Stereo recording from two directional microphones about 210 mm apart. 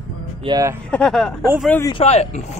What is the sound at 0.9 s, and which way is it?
Speech, 5° left (ahead or behind).